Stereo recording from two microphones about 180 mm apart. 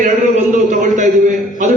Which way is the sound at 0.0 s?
45° right (ahead or behind).